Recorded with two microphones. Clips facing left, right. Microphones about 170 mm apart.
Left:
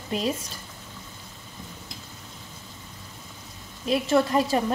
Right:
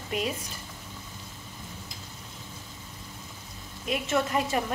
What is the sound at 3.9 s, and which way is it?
Speech, 35° left (ahead or behind).